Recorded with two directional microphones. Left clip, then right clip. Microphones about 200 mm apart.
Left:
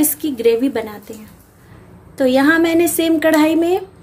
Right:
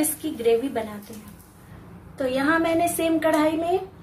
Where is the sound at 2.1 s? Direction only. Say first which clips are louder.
Left 9 dB; 50° left (ahead or behind).